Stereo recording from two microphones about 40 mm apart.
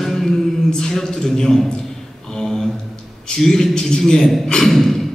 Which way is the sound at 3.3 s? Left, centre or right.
Centre.